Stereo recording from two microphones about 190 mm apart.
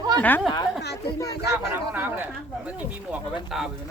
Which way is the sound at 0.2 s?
10° left (ahead or behind).